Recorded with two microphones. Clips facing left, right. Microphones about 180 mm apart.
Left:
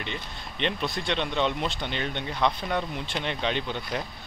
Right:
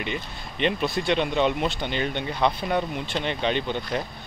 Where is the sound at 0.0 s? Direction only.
5° right (ahead or behind).